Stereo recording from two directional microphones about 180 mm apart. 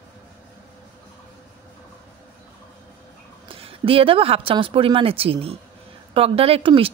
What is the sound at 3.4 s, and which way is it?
Speech, 30° right (ahead or behind).